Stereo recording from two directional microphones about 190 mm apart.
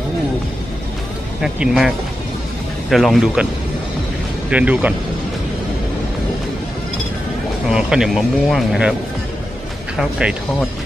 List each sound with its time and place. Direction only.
1.4 s speech: 5° right (ahead or behind)
4.5 s speech: 5° right (ahead or behind)
7.6 s speech: 5° right (ahead or behind)
9.9 s speech: 5° right (ahead or behind)